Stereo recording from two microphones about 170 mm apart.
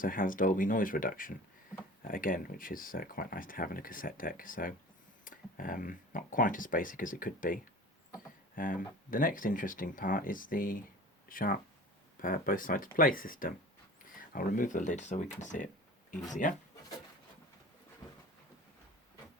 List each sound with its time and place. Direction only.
0.0 s speech: 55° left (ahead or behind)